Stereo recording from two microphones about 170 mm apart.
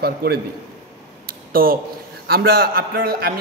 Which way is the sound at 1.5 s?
60° right (ahead or behind).